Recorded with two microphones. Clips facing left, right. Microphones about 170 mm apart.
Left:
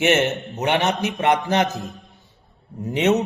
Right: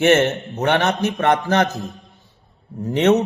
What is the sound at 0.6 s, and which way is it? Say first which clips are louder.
Speech: right 2 dB; 15° left (ahead or behind).